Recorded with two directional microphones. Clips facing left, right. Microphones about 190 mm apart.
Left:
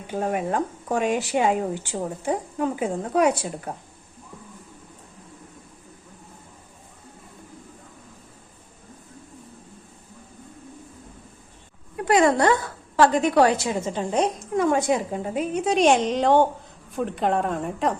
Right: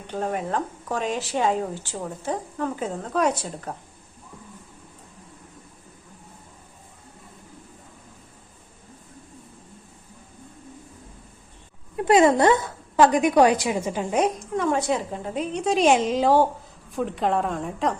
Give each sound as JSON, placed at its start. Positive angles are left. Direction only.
{"t": 0.1, "sound": "speech", "side_deg": 10}
{"t": 11.9, "sound": "a woman's voice", "side_deg": -20}
{"t": 15.1, "sound": "a woman's voice", "side_deg": 5}